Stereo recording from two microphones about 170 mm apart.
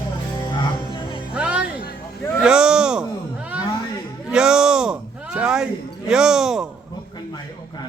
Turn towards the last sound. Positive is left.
turn(degrees=-5)  # may be behind; listen again after turning